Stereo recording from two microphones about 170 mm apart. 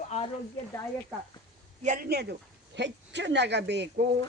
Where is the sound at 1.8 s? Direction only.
50° right (ahead or behind).